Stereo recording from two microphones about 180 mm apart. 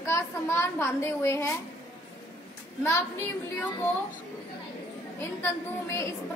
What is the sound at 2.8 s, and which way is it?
Speech, 15° left (ahead or behind).